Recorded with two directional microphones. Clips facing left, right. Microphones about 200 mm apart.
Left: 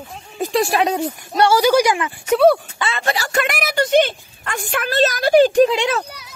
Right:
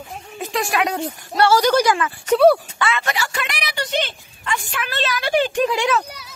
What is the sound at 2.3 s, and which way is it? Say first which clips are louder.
Speech: even; centre (ahead or behind).